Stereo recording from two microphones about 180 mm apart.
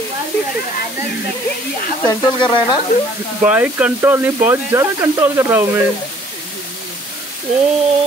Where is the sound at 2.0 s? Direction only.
25° left (ahead or behind).